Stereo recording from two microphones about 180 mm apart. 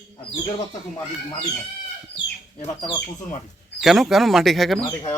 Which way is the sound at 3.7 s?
Centre (ahead or behind).